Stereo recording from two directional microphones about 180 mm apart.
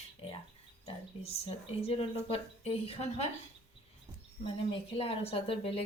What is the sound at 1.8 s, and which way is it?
A woman's voice, 35° left (ahead or behind).